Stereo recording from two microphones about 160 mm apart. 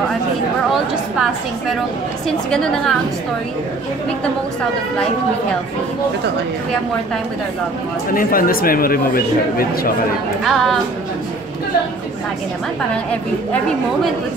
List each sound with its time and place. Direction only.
2.2 s a woman's voice: 5° left (ahead or behind)
8.1 s speech: 60° left (ahead or behind)
10.4 s a woman's voice: centre (ahead or behind)
12.9 s a woman's voice: 5° left (ahead or behind)